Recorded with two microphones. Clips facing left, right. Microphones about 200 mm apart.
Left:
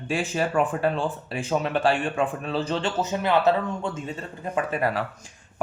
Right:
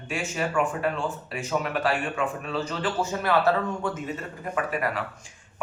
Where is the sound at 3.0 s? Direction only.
20° left (ahead or behind).